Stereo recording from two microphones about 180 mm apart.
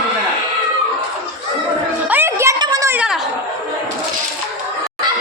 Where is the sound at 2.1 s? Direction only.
10° right (ahead or behind).